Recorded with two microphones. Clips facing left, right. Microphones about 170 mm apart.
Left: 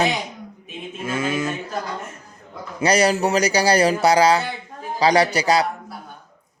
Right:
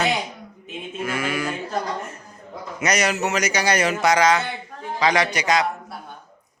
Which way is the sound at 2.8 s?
30° left (ahead or behind).